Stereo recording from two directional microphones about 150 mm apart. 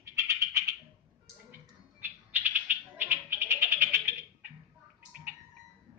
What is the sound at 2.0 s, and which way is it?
Cat, 15° right (ahead or behind).